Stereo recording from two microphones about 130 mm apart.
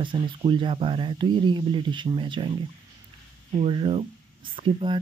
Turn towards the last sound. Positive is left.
turn(degrees=-40)  # may be behind; listen again after turning